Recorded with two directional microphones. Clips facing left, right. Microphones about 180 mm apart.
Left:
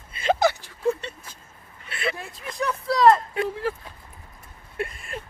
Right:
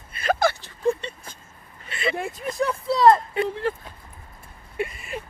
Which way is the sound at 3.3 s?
5° left (ahead or behind).